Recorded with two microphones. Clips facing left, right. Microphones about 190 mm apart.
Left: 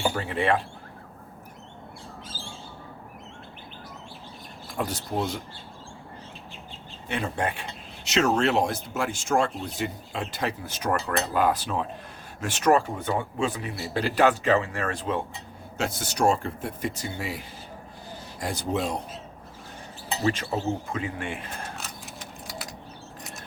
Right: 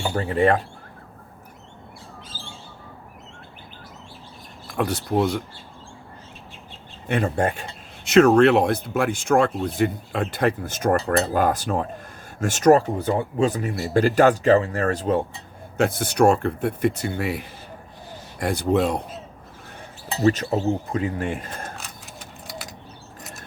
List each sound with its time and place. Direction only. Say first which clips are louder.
0.1 s speech: right 6 dB; 40° right (ahead or behind)
4.8 s speech: right 7 dB; 65° right (ahead or behind)
7.1 s speech: right 6 dB; 45° right (ahead or behind)
15.8 s speech: right 7 dB; 55° right (ahead or behind)
20.2 s speech: right 7 dB; 40° right (ahead or behind)
21.8 s a sound: even; centre (ahead or behind)